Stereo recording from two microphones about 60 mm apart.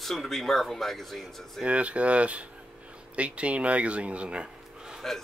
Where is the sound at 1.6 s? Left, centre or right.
Right.